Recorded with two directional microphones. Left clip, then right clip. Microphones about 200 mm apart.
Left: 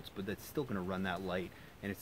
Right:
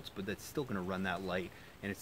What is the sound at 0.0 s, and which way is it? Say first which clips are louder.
Speech: right 1 dB; 5° left (ahead or behind).